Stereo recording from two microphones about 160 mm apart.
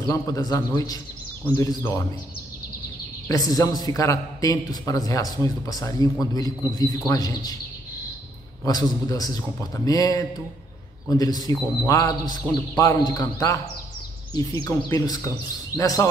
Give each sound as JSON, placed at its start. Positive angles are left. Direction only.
{"t": 0.1, "sound": "a man's voice", "side_deg": 20}
{"t": 3.3, "sound": "a man's voice", "side_deg": 20}
{"t": 8.6, "sound": "a man's voice", "side_deg": 20}